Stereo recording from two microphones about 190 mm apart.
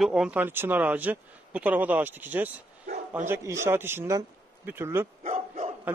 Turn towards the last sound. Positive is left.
turn(degrees=-35)  # may be behind; listen again after turning